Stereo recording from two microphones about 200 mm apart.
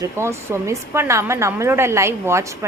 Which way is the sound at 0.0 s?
15° right (ahead or behind).